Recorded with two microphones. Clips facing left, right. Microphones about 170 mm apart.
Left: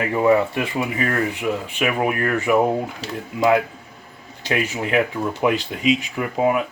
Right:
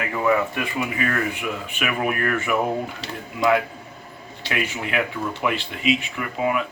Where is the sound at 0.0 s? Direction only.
30° left (ahead or behind).